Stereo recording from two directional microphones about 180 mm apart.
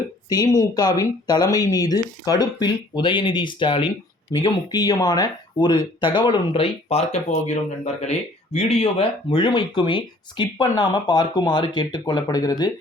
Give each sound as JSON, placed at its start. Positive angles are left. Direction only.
{"t": 0.3, "sound": "speech", "side_deg": 20}